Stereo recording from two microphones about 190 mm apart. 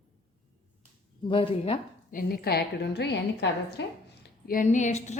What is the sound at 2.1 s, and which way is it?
A woman's voice, 50° left (ahead or behind).